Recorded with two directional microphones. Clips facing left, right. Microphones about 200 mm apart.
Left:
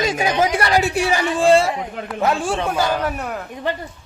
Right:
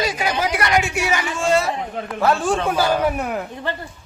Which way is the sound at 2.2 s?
15° left (ahead or behind).